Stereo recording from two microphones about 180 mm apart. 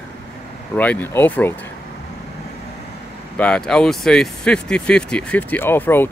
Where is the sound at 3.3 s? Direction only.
5° left (ahead or behind).